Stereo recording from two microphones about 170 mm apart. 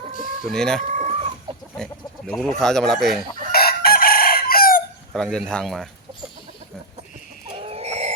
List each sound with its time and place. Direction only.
0.4 s speech: 5° left (ahead or behind)
0.8 s chicken: 40° right (ahead or behind)
1.8 s livestock: 5° left (ahead or behind)
2.6 s speech: 5° left (ahead or behind)
3.5 s chicken: 65° left (ahead or behind)
5.1 s speech: centre (ahead or behind)
7.5 s chicken: 35° right (ahead or behind)